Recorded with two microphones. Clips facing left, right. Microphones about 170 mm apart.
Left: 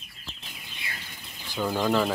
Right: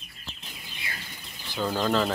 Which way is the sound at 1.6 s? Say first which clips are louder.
Left 1 dB; 10° left (ahead or behind).